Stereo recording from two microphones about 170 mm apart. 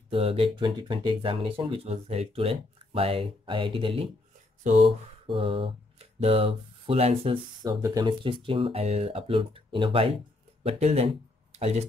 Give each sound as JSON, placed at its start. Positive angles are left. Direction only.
{"t": 0.1, "sound": "speech", "side_deg": -35}
{"t": 7.6, "sound": "speech", "side_deg": -20}
{"t": 11.5, "sound": "a sound", "side_deg": -40}